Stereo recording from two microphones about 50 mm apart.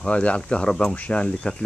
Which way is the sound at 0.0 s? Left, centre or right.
Left.